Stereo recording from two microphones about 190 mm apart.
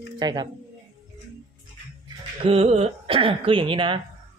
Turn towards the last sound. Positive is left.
turn(degrees=-25)  # may be behind; listen again after turning